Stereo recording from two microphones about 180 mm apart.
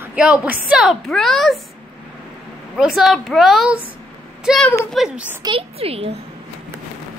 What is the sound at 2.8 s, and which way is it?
A woman's voice, centre (ahead or behind).